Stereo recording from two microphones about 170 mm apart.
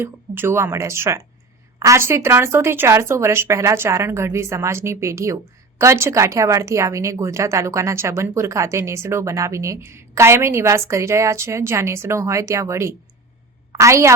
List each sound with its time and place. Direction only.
0.0 s a woman's voice: 15° right (ahead or behind)